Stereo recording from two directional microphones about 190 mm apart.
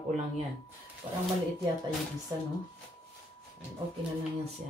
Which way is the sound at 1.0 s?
25° right (ahead or behind).